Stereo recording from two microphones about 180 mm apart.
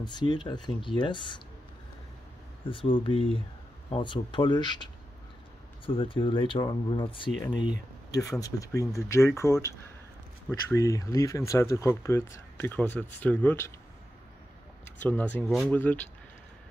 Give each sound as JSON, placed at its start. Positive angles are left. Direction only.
{"t": 0.0, "sound": "speech", "side_deg": 25}
{"t": 2.7, "sound": "speech", "side_deg": 30}
{"t": 5.9, "sound": "speech", "side_deg": 30}
{"t": 15.0, "sound": "speech", "side_deg": 10}